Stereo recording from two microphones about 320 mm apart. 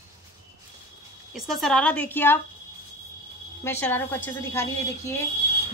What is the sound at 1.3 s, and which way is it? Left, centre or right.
A woman's voice, centre.